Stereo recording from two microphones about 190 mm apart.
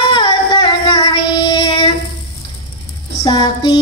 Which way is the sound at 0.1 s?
20° left (ahead or behind).